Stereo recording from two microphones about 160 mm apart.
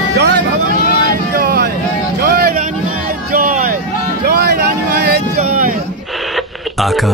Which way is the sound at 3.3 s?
60° right (ahead or behind).